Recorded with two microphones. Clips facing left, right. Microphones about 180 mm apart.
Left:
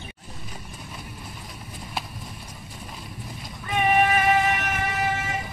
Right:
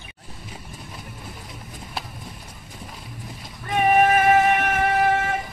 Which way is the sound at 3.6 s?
50° right (ahead or behind).